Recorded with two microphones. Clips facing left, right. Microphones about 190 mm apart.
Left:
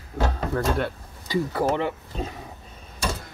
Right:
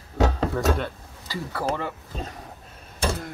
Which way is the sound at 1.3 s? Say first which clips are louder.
Left 5 dB; 20° left (ahead or behind).